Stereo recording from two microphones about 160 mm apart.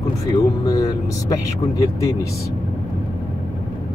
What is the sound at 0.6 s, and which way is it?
Speech, 20° left (ahead or behind).